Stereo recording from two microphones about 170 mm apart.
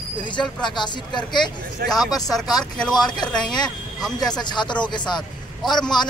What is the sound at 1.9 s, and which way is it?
Speech, centre (ahead or behind).